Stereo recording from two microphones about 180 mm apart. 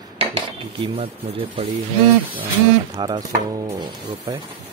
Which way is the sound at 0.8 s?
30° right (ahead or behind).